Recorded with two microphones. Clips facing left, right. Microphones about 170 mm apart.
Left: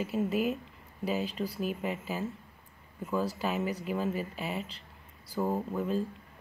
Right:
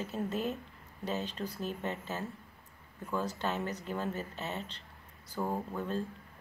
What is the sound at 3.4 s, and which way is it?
Speech, 5° left (ahead or behind).